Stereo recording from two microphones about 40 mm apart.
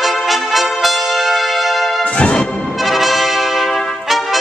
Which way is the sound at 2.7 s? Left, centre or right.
Centre.